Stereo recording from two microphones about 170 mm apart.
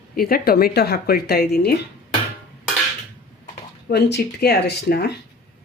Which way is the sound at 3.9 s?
75° left (ahead or behind).